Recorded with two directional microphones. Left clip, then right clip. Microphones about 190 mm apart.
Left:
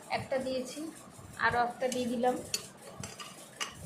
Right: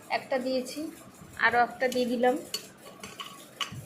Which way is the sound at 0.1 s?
15° right (ahead or behind).